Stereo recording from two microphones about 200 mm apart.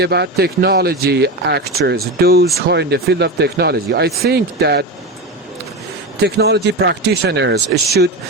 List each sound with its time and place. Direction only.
0.0 s speech: 55° right (ahead or behind)
6.1 s speech: 55° right (ahead or behind)